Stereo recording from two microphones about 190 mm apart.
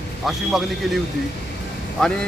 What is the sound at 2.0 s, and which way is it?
Speech, 5° left (ahead or behind).